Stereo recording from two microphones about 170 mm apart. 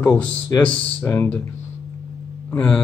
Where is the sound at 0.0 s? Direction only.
10° left (ahead or behind).